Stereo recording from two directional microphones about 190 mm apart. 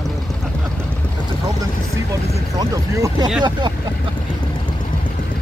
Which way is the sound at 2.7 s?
15° right (ahead or behind).